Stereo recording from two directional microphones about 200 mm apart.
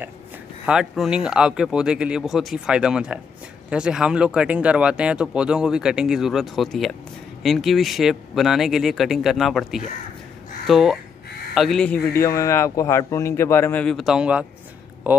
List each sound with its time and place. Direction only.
0.7 s speech: 5° right (ahead or behind)
12.1 s a man's voice: 15° left (ahead or behind); by 15.2 s 10° right (ahead or behind)